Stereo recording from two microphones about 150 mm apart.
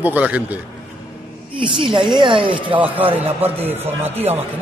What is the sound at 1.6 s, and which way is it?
Speech, 35° right (ahead or behind).